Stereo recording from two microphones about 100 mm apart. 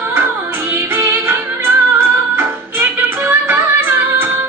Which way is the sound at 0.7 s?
20° right (ahead or behind).